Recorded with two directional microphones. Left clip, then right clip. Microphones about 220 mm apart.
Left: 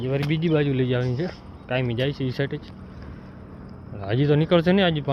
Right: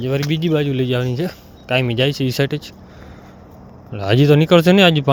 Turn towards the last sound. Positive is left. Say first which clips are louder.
# right 8 dB
turn(degrees=-30)  # may be behind; listen again after turning